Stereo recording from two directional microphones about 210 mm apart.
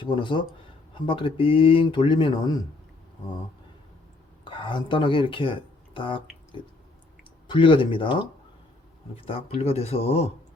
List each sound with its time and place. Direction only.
0.0 s speech: 25° left (ahead or behind)
4.4 s speech: 25° left (ahead or behind)
7.4 s speech: 25° left (ahead or behind)